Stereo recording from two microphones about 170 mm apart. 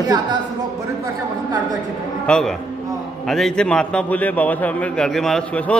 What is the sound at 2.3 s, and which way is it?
A man's voice, 5° left (ahead or behind).